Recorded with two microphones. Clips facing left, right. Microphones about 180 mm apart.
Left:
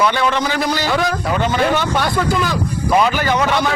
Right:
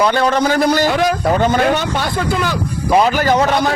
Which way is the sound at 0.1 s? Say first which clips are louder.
Right 4 dB; 40° right (ahead or behind).